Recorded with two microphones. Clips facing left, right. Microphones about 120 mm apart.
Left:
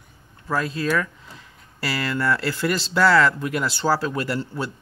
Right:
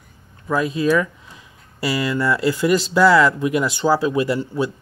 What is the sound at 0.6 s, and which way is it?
Speech, 15° right (ahead or behind).